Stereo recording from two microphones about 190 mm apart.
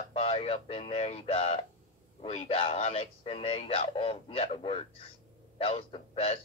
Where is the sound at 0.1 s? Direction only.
30° left (ahead or behind).